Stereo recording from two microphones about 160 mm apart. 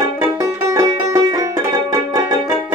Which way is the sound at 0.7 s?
20° right (ahead or behind).